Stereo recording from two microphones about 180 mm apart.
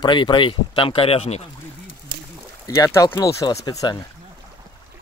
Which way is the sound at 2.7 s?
20° left (ahead or behind).